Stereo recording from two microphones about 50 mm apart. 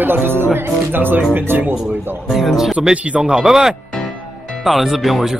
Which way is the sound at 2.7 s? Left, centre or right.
Centre.